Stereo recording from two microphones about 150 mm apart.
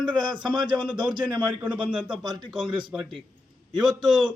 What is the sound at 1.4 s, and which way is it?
Speech, 10° right (ahead or behind).